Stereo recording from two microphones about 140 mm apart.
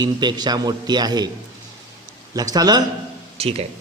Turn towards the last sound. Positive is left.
turn(degrees=-45)  # may be behind; listen again after turning